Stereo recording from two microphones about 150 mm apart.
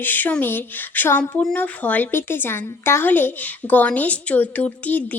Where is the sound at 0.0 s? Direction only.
10° left (ahead or behind).